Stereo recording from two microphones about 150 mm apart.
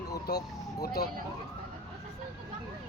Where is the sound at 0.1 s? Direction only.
90° left.